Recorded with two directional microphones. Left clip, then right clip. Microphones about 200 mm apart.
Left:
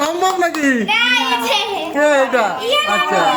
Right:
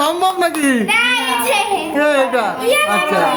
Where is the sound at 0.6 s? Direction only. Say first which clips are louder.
Even; centre (ahead or behind).